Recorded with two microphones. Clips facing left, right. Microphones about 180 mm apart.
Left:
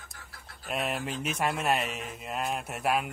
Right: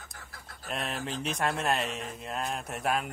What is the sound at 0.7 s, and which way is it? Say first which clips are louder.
Speech: left 2 dB; 5° left (ahead or behind).